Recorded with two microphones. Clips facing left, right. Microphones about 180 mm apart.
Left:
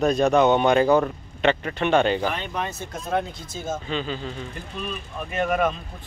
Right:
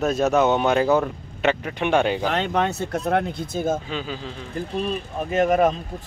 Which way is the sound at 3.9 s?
5° right (ahead or behind).